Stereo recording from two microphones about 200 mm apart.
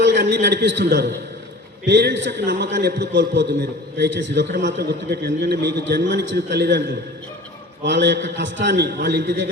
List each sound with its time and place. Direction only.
0.0 s a man's voice: 60° right (ahead or behind)